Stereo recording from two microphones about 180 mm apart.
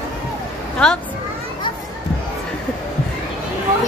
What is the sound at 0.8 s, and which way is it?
Speech, 5° left (ahead or behind).